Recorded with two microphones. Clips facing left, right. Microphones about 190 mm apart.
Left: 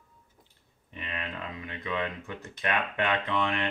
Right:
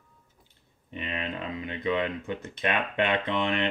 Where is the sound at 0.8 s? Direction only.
25° right (ahead or behind).